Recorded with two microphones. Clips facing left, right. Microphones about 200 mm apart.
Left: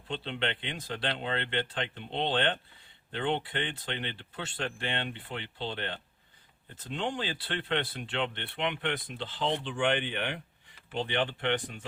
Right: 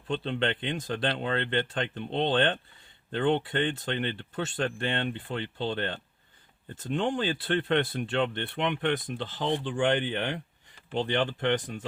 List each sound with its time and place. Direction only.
0.1 s speech: 50° right (ahead or behind)